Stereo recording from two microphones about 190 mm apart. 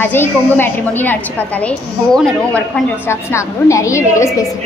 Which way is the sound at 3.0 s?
15° left (ahead or behind).